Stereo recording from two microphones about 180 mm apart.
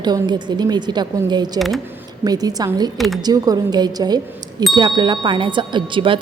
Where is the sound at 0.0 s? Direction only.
25° right (ahead or behind).